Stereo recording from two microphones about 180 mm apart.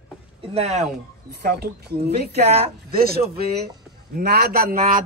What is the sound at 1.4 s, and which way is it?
A woman's voice, 60° right (ahead or behind).